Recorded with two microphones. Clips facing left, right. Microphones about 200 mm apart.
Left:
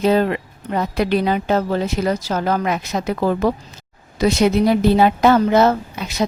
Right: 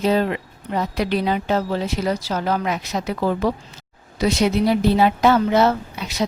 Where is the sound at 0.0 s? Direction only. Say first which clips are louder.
Left 3 dB; 55° left (ahead or behind).